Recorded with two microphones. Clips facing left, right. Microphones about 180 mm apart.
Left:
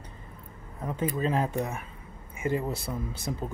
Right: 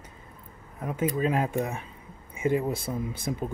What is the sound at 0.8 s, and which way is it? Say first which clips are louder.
Speech: right 2 dB; 10° right (ahead or behind).